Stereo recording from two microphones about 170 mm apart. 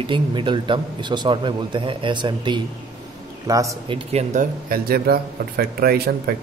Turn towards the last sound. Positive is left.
turn(degrees=-65)  # may be behind; listen again after turning